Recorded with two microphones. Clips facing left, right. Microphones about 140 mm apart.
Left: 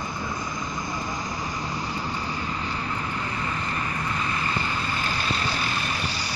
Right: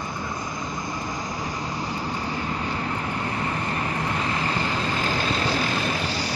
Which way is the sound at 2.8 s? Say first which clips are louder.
Right 2 dB; 50° right (ahead or behind).